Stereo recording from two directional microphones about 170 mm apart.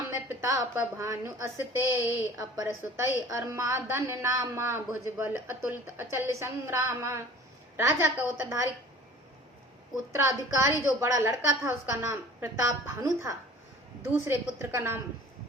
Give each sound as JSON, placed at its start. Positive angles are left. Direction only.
{"t": 0.4, "sound": "a woman's voice", "side_deg": -20}
{"t": 10.2, "sound": "a woman's voice", "side_deg": -15}